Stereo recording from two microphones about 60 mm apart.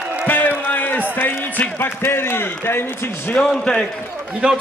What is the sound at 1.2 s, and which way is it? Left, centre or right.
Speech, left.